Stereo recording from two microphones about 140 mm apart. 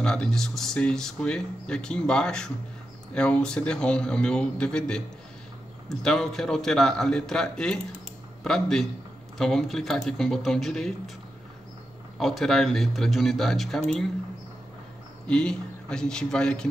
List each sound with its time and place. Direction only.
0.0 s speech: 5° left (ahead or behind)
12.2 s speech: centre (ahead or behind)
15.2 s speech: 5° left (ahead or behind)